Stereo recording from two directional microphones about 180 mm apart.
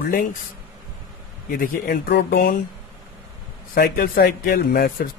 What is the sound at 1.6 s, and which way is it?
Speech, 50° left (ahead or behind).